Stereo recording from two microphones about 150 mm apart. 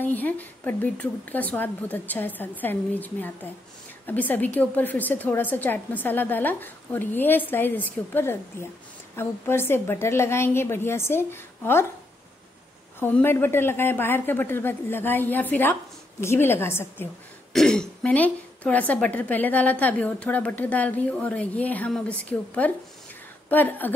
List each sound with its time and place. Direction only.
0.0 s a woman's voice: 10° left (ahead or behind)
13.0 s a woman's voice: 15° left (ahead or behind)
17.5 s a woman's voice: 5° left (ahead or behind)
23.5 s a woman's voice: 10° left (ahead or behind)